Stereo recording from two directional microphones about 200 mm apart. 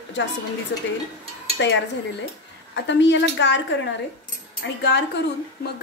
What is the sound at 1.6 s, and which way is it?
Speech, 65° left (ahead or behind).